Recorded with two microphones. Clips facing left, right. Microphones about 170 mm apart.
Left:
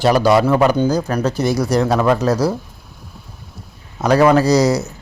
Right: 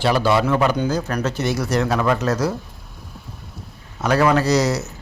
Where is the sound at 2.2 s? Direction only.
10° left (ahead or behind).